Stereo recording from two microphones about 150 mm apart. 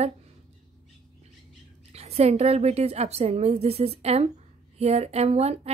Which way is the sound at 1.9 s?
45° right (ahead or behind).